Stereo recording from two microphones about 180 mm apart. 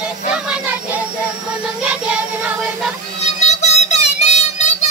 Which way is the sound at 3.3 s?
40° left (ahead or behind).